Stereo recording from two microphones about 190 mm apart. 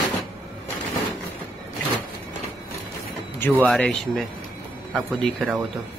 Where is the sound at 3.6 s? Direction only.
5° left (ahead or behind).